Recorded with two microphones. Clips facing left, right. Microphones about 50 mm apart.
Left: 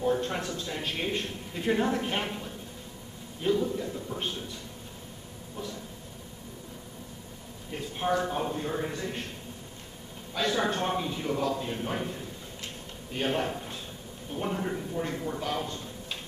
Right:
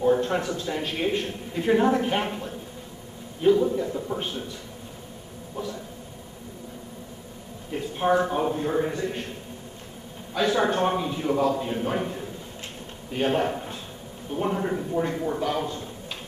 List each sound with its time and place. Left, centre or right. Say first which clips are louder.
0.0 s a man's voice: right 6 dB; centre
7.7 s a man's voice: right 6 dB; centre
10.3 s a man's voice: right 5 dB; centre